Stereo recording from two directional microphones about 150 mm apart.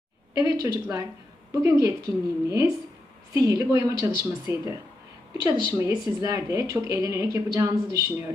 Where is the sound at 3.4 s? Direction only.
20° right (ahead or behind).